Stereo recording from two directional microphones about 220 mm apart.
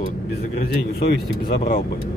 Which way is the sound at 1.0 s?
45° left (ahead or behind).